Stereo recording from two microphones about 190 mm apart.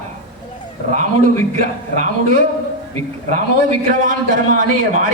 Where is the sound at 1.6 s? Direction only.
40° right (ahead or behind).